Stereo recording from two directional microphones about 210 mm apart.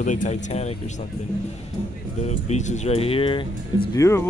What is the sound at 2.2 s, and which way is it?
Speech, 35° left (ahead or behind).